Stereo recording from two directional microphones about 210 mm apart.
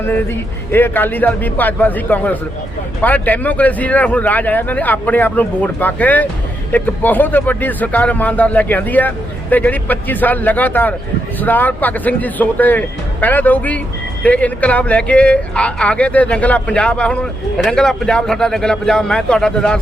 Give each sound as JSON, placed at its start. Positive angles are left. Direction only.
{"t": 0.7, "sound": "a man's voice", "side_deg": 10}